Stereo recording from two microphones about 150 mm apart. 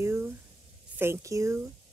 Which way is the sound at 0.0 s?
15° right (ahead or behind).